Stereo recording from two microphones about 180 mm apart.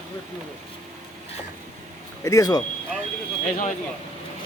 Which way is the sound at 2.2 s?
20° left (ahead or behind).